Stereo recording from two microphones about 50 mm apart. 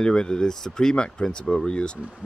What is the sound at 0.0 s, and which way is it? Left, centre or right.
Speech, centre.